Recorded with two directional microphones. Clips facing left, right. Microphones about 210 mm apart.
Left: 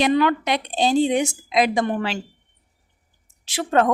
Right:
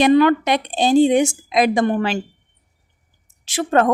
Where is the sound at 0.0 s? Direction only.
50° right (ahead or behind).